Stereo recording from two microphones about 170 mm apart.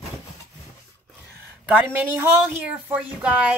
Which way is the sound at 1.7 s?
10° right (ahead or behind).